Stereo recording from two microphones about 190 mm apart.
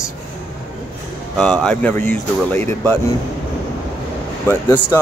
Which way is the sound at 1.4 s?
5° left (ahead or behind).